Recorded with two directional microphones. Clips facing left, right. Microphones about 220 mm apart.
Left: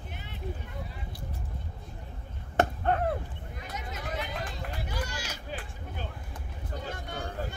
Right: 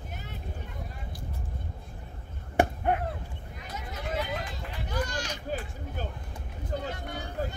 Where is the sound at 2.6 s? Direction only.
10° right (ahead or behind).